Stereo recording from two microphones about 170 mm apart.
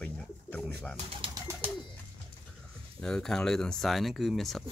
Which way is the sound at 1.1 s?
30° right (ahead or behind).